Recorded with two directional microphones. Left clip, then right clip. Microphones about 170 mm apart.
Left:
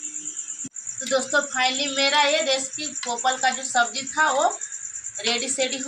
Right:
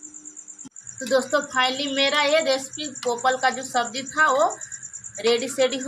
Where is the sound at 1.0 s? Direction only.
60° right (ahead or behind).